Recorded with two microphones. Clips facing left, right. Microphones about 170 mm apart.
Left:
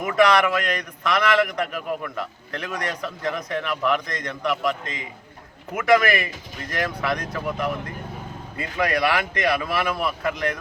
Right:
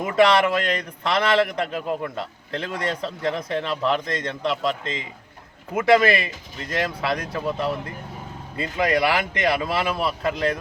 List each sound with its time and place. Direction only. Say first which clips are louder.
0.0 s a man's voice: right 1 dB; 25° right (ahead or behind)